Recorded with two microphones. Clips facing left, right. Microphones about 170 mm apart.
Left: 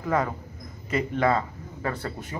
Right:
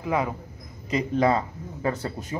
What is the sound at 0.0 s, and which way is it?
Speech, 10° right (ahead or behind).